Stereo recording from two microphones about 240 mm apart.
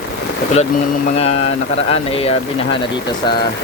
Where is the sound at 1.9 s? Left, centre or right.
Left.